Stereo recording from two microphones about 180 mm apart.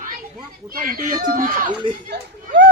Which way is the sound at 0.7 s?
50° right (ahead or behind).